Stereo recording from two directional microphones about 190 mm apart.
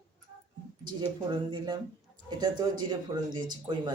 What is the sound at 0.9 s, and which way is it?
Speech, 25° right (ahead or behind).